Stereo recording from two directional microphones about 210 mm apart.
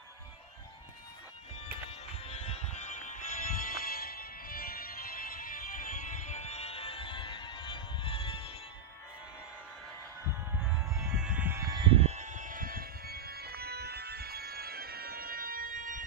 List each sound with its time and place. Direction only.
1.8 s music: 30° left (ahead or behind)
10.6 s music: 10° right (ahead or behind)
11.1 s a sound: 5° right (ahead or behind); by 16.0 s 40° right (ahead or behind)